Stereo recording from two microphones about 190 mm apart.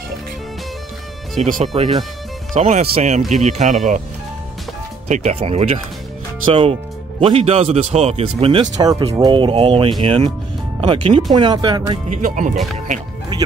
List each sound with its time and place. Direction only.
1.4 s speech: 35° right (ahead or behind)
5.0 s speech: 35° right (ahead or behind)
8.7 s speech: 20° right (ahead or behind)
11.9 s speech: 40° right (ahead or behind)